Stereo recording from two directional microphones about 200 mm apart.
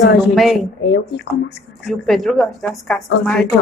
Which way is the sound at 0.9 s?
60° left (ahead or behind).